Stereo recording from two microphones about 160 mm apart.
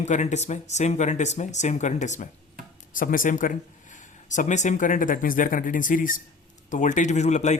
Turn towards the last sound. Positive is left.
turn(degrees=45)  # may be behind; listen again after turning